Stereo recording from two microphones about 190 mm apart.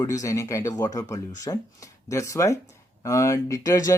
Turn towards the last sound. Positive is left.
turn(degrees=15)  # may be behind; listen again after turning